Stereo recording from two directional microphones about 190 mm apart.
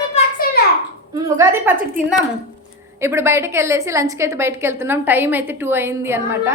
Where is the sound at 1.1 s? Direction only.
15° right (ahead or behind).